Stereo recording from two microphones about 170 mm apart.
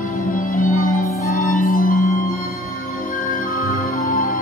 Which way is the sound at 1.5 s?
55° left (ahead or behind).